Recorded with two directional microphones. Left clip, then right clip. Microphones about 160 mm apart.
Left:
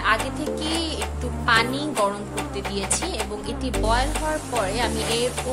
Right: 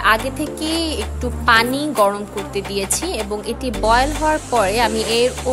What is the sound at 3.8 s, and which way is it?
Speech, 50° right (ahead or behind).